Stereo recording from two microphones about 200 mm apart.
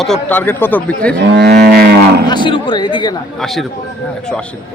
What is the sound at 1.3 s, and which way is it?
Livestock, 60° right (ahead or behind).